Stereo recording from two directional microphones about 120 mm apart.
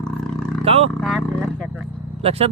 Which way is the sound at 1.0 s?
5° left (ahead or behind).